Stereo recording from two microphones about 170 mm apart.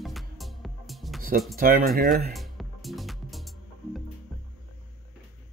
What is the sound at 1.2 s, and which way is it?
Speech, 60° right (ahead or behind).